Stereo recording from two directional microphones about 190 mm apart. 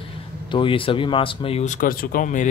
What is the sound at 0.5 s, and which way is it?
Speech, 25° left (ahead or behind).